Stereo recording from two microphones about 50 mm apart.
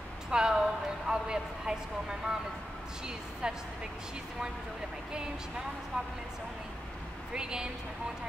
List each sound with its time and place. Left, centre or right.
0.3 s a sound: centre
3.4 s a woman's voice: centre
7.3 s a woman's voice: centre